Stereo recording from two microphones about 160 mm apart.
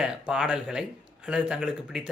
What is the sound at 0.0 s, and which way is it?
Speech, 5° right (ahead or behind).